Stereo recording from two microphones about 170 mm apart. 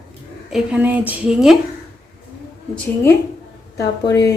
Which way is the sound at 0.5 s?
10° right (ahead or behind).